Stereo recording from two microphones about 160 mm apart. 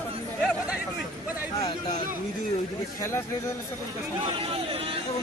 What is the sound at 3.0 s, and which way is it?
Speech, 15° left (ahead or behind).